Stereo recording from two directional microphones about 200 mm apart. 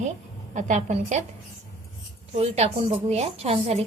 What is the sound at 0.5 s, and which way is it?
Speech, 35° right (ahead or behind).